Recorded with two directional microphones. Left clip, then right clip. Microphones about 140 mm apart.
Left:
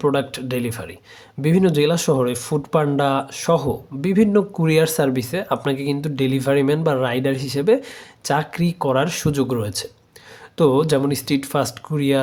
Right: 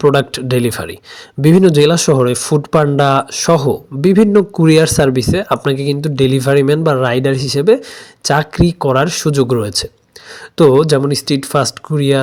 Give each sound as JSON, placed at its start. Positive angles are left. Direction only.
{"t": 0.0, "sound": "speech", "side_deg": -40}
{"t": 1.4, "sound": "speech", "side_deg": -40}